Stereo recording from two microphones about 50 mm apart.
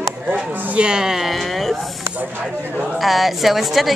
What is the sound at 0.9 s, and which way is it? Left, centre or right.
Speech, centre.